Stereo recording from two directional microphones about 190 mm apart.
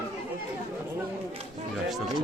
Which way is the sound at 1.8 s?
Centre (ahead or behind).